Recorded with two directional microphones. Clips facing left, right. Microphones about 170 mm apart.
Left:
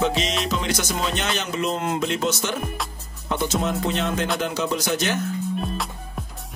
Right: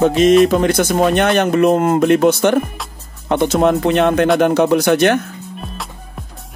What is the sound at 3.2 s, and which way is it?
Speech, 65° right (ahead or behind).